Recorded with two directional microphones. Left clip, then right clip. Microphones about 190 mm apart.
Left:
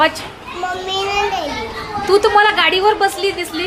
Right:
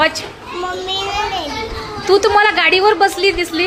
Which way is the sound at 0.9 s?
15° left (ahead or behind).